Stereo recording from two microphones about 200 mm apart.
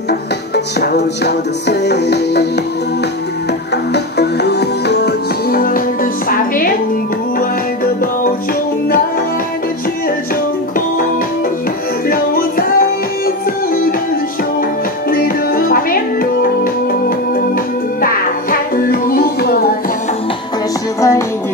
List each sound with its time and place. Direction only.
0.7 s music: 55° left (ahead or behind)
3.7 s music: 55° left (ahead or behind)
12.1 s music: 45° left (ahead or behind)
15.0 s music: 45° left (ahead or behind)
18.0 s music: 45° left (ahead or behind)